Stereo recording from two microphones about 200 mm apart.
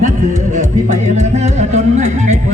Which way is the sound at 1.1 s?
35° right (ahead or behind).